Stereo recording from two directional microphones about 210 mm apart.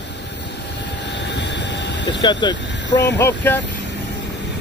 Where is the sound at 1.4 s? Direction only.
55° left (ahead or behind).